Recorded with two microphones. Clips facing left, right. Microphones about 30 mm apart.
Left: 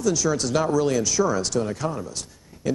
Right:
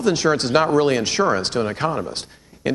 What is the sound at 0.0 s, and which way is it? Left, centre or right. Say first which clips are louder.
Speech: right 4 dB; right.